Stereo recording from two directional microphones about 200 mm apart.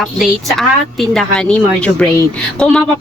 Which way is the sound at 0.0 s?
Centre (ahead or behind).